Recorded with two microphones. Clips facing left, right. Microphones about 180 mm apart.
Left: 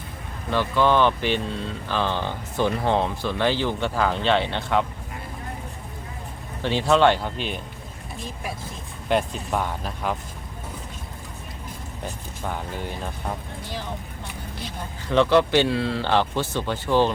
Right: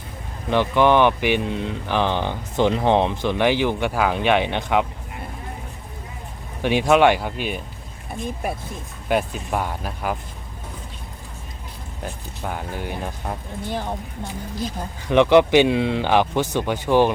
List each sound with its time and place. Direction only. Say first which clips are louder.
0.5 s speech: right 4 dB; 20° right (ahead or behind)
6.6 s speech: right 3 dB; 15° right (ahead or behind)
9.0 s speech: right 1 dB; 5° right (ahead or behind)
12.5 s speech: right 2 dB; 5° right (ahead or behind)
13.7 s speech: right 6 dB; 55° right (ahead or behind)
15.1 s speech: right 4 dB; 15° right (ahead or behind)